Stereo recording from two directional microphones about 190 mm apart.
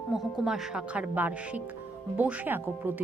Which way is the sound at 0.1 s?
5° right (ahead or behind).